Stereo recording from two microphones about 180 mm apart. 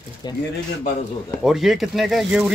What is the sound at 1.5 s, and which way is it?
Speech, centre (ahead or behind).